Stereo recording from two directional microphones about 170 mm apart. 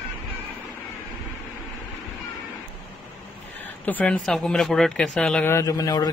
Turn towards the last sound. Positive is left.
turn(degrees=20)  # may be behind; listen again after turning